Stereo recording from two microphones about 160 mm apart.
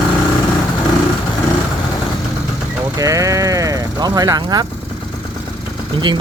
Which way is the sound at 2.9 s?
20° right (ahead or behind).